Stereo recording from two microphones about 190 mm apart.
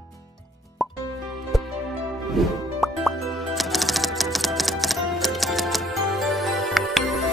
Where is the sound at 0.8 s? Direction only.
Centre (ahead or behind).